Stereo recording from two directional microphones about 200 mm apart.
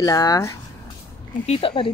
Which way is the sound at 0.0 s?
20° left (ahead or behind).